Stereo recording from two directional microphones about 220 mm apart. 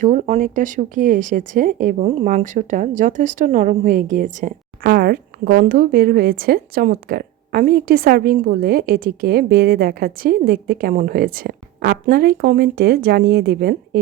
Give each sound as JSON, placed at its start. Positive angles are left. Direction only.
{"t": 0.0, "sound": "speech", "side_deg": -35}